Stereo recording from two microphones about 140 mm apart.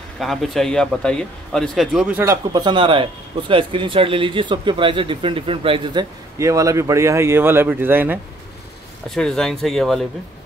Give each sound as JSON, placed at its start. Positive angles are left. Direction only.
{"t": 0.2, "sound": "a man's voice", "side_deg": 0}
{"t": 2.1, "sound": "speech", "side_deg": -20}
{"t": 6.3, "sound": "speech", "side_deg": -20}
{"t": 9.1, "sound": "a man's voice", "side_deg": 5}